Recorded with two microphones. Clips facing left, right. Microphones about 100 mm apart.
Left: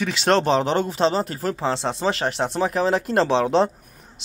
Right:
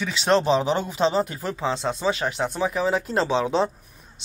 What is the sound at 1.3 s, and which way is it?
Speech, 55° left (ahead or behind).